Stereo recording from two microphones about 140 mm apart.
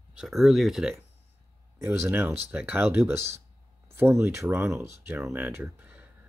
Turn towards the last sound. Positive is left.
turn(degrees=-10)  # may be behind; listen again after turning